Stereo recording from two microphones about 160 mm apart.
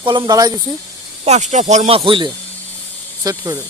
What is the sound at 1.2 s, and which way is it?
Speech, 45° right (ahead or behind).